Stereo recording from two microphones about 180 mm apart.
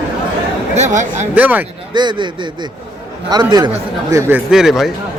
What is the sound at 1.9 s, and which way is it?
Speech, 25° right (ahead or behind).